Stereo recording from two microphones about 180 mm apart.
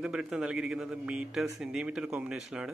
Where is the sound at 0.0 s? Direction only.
5° right (ahead or behind).